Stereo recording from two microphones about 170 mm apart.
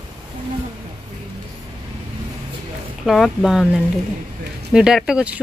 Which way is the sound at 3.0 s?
Centre (ahead or behind).